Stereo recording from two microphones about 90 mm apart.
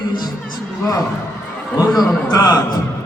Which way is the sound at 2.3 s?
45° left (ahead or behind).